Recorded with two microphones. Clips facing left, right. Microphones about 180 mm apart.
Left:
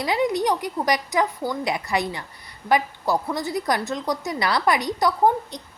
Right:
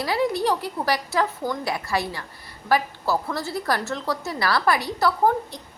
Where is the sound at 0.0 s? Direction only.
20° left (ahead or behind).